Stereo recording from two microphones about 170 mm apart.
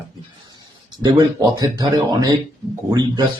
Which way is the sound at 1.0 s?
25° right (ahead or behind).